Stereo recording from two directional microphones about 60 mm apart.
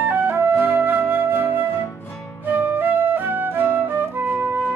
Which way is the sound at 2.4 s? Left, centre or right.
Right.